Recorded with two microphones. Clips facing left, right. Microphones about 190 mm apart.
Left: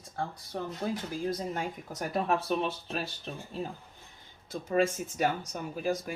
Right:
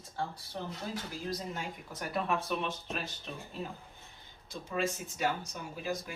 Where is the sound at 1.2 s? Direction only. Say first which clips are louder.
Left 6 dB; 50° left (ahead or behind).